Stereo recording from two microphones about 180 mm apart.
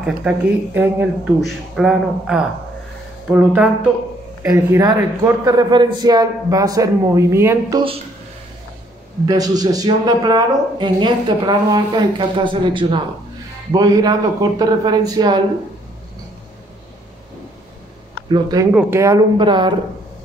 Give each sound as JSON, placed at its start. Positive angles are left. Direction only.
{"t": 0.3, "sound": "speech", "side_deg": -10}
{"t": 4.5, "sound": "a man's voice", "side_deg": -20}
{"t": 9.2, "sound": "a man's voice", "side_deg": -20}
{"t": 18.3, "sound": "a man's voice", "side_deg": -20}